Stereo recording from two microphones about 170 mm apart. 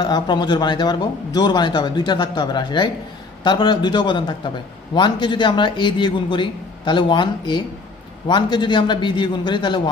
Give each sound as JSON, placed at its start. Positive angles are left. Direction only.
{"t": 0.0, "sound": "speech", "side_deg": 25}